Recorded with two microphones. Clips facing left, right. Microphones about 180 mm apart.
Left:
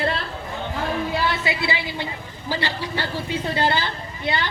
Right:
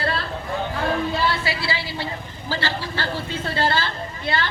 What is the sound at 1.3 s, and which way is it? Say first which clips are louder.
A man's voice: left 1 dB; 20° left (ahead or behind).